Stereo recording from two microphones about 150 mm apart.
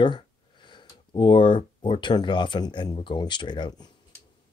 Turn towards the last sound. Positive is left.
turn(degrees=30)  # may be behind; listen again after turning